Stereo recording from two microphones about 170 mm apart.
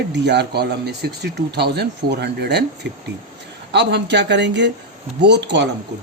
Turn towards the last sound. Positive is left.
turn(degrees=-90)